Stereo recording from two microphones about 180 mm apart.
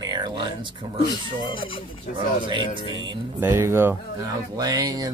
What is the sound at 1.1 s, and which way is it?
Speech, 25° left (ahead or behind).